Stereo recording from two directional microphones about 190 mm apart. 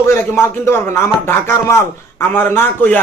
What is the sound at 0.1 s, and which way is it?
A man's voice, 15° left (ahead or behind).